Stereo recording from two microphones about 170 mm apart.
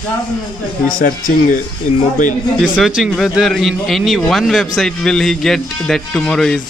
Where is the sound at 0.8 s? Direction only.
55° left (ahead or behind).